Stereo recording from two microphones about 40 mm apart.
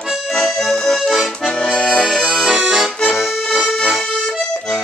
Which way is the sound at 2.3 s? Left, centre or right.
Centre.